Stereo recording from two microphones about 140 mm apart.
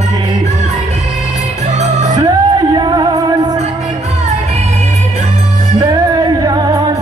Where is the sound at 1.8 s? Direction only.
60° right (ahead or behind).